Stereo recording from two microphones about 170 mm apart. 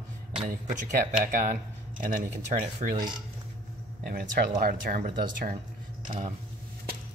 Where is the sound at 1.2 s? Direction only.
55° right (ahead or behind).